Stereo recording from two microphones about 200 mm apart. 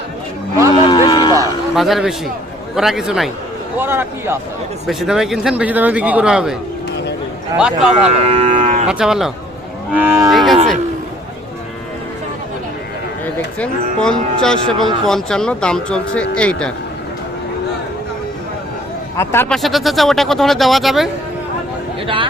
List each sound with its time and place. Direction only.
0.7 s a sound: 20° left (ahead or behind)
1.7 s a man's voice: centre (ahead or behind)
8.3 s cattle: 35° right (ahead or behind)
8.9 s a man's voice: 5° right (ahead or behind)
9.9 s cattle: 10° right (ahead or behind)
10.3 s cattle: centre (ahead or behind)
13.2 s a man's voice: 5° left (ahead or behind)
19.1 s a man's voice: 10° left (ahead or behind)
19.5 s a man's voice: centre (ahead or behind)
22.0 s speech: 25° right (ahead or behind)